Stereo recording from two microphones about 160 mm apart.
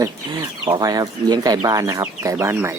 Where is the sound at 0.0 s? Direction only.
25° right (ahead or behind).